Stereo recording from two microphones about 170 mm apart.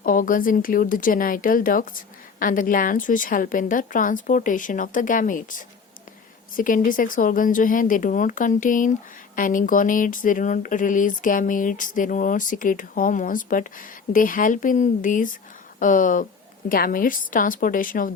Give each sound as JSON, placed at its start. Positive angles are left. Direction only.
{"t": 0.0, "sound": "a woman's voice", "side_deg": 55}